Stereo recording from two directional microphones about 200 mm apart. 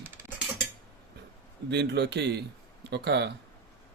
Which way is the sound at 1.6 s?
60° right (ahead or behind).